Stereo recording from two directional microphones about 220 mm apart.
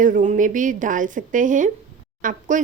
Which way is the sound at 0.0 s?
35° right (ahead or behind).